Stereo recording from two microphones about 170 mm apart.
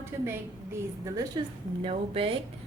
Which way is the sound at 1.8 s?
35° right (ahead or behind).